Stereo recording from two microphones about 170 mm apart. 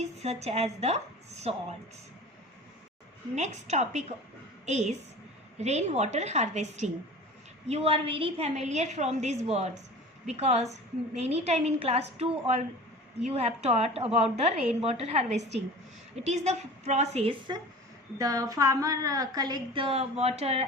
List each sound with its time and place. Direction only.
0.0 s a woman's voice: 40° right (ahead or behind)
3.3 s a woman's voice: 40° right (ahead or behind)
15.4 s a woman's voice: 90° right
16.1 s a woman's voice: 40° right (ahead or behind)